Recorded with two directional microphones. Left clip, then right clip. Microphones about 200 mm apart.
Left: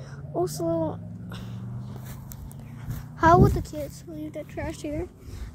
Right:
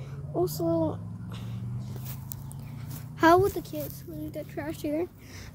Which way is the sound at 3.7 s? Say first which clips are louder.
Left 2 dB; 20° left (ahead or behind).